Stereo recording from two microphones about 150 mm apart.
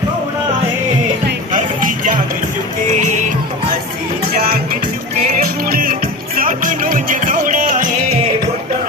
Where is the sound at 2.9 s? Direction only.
55° right (ahead or behind).